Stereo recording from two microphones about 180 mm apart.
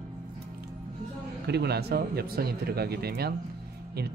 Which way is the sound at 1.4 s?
65° right (ahead or behind).